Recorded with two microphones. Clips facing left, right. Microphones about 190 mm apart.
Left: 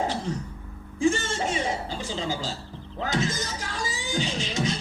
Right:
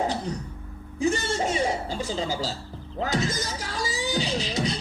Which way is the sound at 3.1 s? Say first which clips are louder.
Left 1 dB; 40° right (ahead or behind).